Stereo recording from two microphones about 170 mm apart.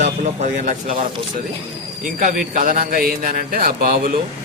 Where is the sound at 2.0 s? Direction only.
55° right (ahead or behind).